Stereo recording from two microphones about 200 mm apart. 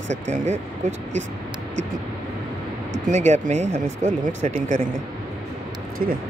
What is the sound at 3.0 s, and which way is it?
Speech, 35° right (ahead or behind).